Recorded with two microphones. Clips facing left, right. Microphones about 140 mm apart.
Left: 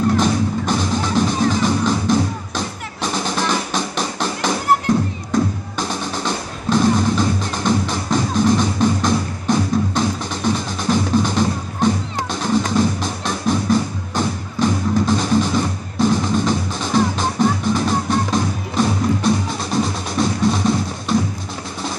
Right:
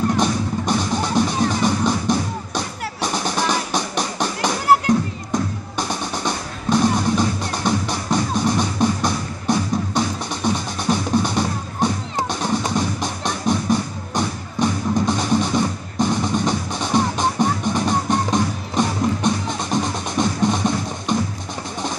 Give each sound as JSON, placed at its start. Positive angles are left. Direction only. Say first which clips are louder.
{"t": 0.2, "sound": "music", "louder": "left 2 dB", "side_deg": -15}